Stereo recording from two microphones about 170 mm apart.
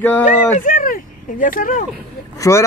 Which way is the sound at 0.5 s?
55° left (ahead or behind).